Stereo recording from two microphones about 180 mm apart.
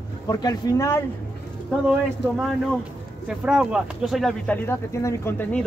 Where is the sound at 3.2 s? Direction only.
5° right (ahead or behind).